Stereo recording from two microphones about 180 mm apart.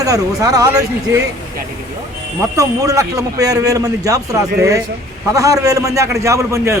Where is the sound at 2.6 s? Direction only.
20° right (ahead or behind).